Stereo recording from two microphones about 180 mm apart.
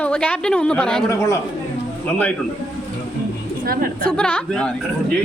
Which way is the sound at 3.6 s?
55° right (ahead or behind).